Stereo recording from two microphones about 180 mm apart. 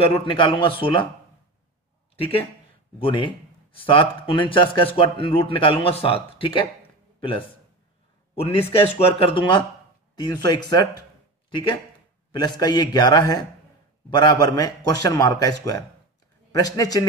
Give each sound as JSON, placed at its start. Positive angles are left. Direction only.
{"t": 0.0, "sound": "speech", "side_deg": 30}
{"t": 2.1, "sound": "a man's voice", "side_deg": 30}